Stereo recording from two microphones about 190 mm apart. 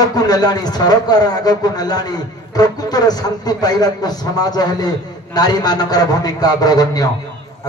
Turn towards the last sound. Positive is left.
turn(degrees=20)  # may be behind; listen again after turning